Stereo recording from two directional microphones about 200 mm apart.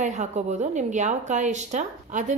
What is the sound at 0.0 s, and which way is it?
A woman's voice, 35° right (ahead or behind).